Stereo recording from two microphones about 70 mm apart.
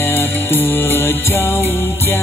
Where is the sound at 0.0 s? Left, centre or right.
Left.